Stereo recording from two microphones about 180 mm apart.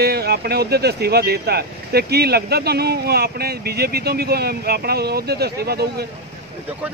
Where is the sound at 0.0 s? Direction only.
60° right (ahead or behind).